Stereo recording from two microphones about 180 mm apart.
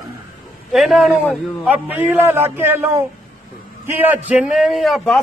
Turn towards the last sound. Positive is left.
turn(degrees=0)  # may be behind; listen again after turning